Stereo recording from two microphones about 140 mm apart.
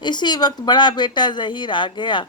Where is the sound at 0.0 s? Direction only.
30° left (ahead or behind).